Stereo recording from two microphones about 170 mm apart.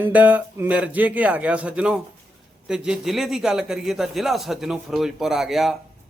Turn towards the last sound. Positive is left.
turn(degrees=0)  # may be behind; listen again after turning